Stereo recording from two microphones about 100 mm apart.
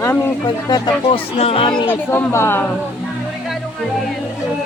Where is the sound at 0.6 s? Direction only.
40° left (ahead or behind).